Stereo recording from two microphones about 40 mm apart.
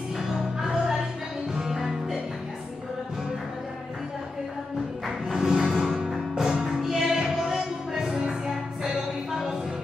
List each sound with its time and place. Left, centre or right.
0.3 s music: centre
5.0 s music: centre
6.8 s music: centre